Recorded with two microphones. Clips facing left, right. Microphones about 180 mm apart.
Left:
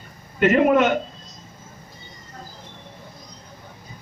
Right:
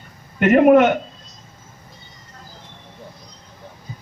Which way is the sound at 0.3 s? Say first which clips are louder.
Right 5 dB; 55° right (ahead or behind).